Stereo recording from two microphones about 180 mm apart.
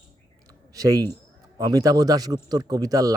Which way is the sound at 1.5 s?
20° right (ahead or behind).